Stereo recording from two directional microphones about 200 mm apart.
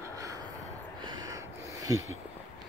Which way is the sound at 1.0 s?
15° right (ahead or behind).